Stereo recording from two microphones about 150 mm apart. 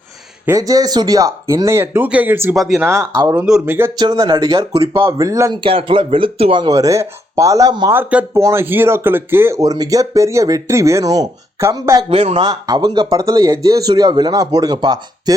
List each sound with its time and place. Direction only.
0.4 s speech: 25° right (ahead or behind)
3.9 s speech: 25° right (ahead or behind)
5.1 s speech: 20° right (ahead or behind)
5.6 s speech: 35° right (ahead or behind)
7.9 s speech: 15° right (ahead or behind)
12.0 s speech: 40° right (ahead or behind)